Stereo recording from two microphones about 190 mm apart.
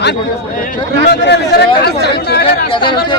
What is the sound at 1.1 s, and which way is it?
Speech, 60° left (ahead or behind).